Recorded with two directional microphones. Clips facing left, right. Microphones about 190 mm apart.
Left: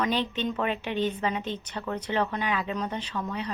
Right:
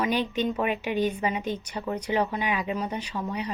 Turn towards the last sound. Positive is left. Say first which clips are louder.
# right 1 dB
turn(degrees=-15)  # may be behind; listen again after turning